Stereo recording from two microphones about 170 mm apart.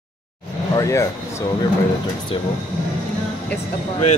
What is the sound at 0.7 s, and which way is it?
Speech, 20° left (ahead or behind).